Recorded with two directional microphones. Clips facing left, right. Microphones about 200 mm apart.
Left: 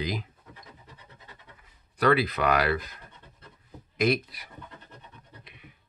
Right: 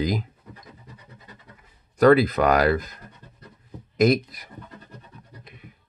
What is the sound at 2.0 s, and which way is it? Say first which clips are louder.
Speech: right 8 dB; 45° right (ahead or behind).